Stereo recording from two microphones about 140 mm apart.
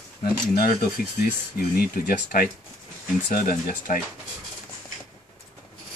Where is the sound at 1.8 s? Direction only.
90° left.